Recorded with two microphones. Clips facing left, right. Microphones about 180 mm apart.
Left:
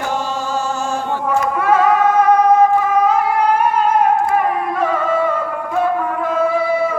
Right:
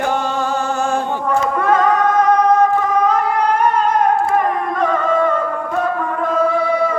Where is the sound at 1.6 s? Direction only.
5° left (ahead or behind).